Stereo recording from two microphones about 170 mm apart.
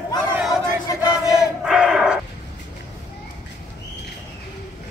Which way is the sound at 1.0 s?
5° right (ahead or behind).